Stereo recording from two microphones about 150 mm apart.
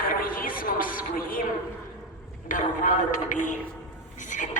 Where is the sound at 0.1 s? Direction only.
70° left (ahead or behind).